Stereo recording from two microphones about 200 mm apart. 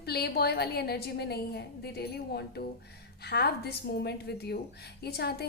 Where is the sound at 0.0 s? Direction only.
50° left (ahead or behind).